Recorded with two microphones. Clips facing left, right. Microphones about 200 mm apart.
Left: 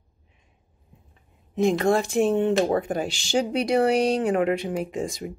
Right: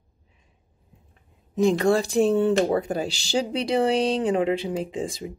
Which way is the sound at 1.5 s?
35° right (ahead or behind).